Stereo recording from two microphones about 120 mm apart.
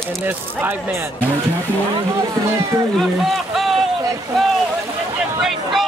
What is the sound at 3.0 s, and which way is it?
Speech, centre (ahead or behind).